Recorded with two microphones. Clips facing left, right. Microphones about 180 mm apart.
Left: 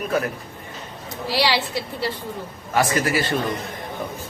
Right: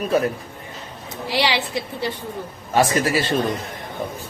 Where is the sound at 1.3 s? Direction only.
20° right (ahead or behind).